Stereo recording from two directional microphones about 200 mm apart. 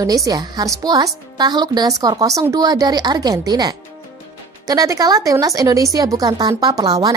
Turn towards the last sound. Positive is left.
turn(degrees=-20)  # may be behind; listen again after turning